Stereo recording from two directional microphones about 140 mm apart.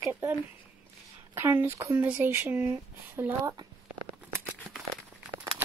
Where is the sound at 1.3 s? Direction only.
15° right (ahead or behind).